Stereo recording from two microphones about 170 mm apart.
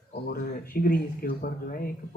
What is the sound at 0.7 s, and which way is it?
Speech, 60° left (ahead or behind).